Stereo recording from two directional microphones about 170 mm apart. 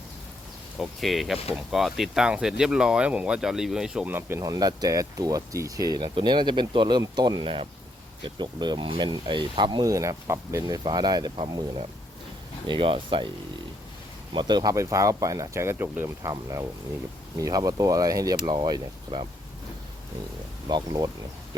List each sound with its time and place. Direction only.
0.8 s speech: centre (ahead or behind); by 13.3 s 30° right (ahead or behind)
14.3 s speech: 25° right (ahead or behind)
20.7 s speech: 25° right (ahead or behind)